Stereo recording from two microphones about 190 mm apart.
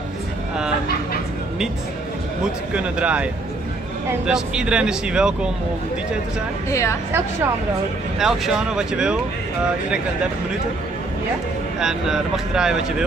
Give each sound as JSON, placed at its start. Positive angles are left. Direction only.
{"t": 2.4, "sound": "speech", "side_deg": -5}
{"t": 4.3, "sound": "speech", "side_deg": -5}
{"t": 6.7, "sound": "a woman's voice", "side_deg": 15}
{"t": 8.2, "sound": "speech", "side_deg": 0}
{"t": 11.8, "sound": "speech", "side_deg": -5}